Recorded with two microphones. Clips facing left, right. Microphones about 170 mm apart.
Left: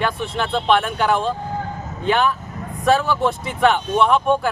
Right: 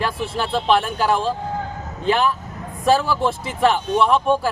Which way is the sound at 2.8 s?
Centre (ahead or behind).